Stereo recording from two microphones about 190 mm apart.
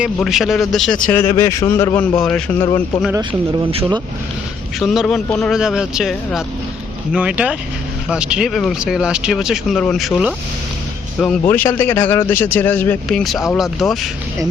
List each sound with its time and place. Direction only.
0.2 s speech: centre (ahead or behind)
1.0 s a man's voice: 10° left (ahead or behind)
3.7 s speech: 25° right (ahead or behind)
4.8 s a man's voice: centre (ahead or behind)